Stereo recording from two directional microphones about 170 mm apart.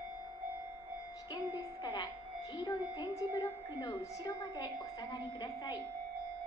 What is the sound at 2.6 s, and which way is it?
A woman's voice, 20° left (ahead or behind).